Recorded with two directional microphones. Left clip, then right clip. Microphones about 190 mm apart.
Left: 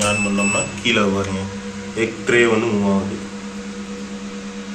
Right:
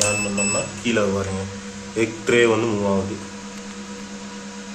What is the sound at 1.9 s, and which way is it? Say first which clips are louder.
Speech: left 2 dB; 65° right (ahead or behind).